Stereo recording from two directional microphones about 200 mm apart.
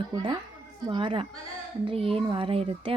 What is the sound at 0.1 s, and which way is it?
A child's voice, 20° right (ahead or behind).